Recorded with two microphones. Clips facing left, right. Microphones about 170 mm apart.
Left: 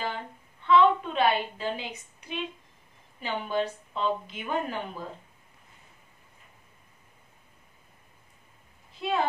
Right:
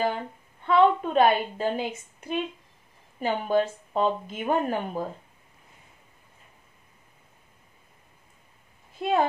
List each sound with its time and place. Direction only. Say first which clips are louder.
0.0 s a woman's voice: right 7 dB; 45° right (ahead or behind)
8.9 s speech: right 4 dB; 50° right (ahead or behind)